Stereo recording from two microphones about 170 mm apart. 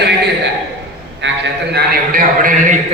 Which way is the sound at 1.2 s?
90° right.